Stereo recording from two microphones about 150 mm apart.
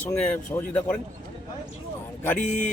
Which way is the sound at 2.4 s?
55° left (ahead or behind).